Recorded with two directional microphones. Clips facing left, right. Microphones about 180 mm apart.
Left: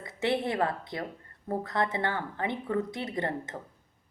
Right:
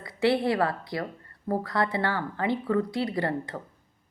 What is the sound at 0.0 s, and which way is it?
A woman's voice, 20° left (ahead or behind).